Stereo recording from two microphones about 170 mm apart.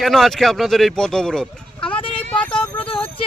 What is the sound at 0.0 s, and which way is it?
Speech, centre (ahead or behind).